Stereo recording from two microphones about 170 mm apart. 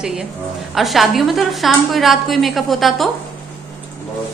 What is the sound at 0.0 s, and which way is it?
A woman's voice, 5° right (ahead or behind).